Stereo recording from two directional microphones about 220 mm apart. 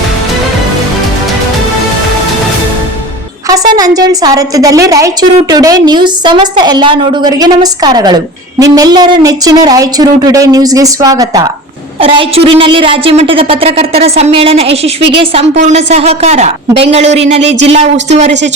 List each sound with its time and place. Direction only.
3.7 s a woman's voice: 15° right (ahead or behind)
17.4 s speech: 55° right (ahead or behind)
18.1 s speech: 30° right (ahead or behind)